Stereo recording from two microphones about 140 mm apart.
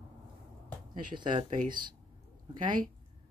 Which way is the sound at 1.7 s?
85° right.